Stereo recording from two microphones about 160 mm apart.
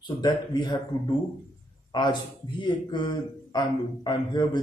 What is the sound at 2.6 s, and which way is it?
A man's voice, 30° left (ahead or behind).